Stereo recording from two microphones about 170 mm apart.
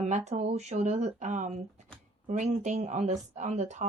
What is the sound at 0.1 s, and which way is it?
Speech, 40° right (ahead or behind).